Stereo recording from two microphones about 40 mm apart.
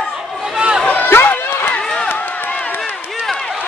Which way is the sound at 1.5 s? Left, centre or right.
Left.